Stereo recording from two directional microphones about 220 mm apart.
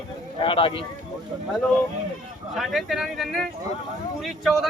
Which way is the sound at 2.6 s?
Centre (ahead or behind).